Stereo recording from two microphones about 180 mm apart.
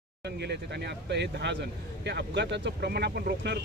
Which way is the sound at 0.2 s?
70° right (ahead or behind).